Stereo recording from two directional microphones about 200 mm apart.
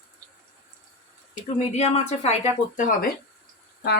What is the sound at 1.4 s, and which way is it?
Speech, 30° left (ahead or behind).